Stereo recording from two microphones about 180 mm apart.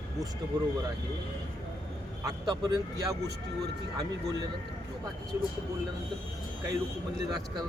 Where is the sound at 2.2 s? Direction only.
20° right (ahead or behind).